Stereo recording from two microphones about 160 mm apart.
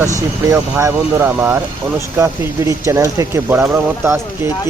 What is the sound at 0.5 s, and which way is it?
Speech, 20° right (ahead or behind).